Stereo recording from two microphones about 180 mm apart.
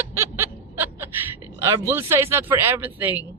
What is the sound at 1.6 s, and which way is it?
Speech, 25° right (ahead or behind).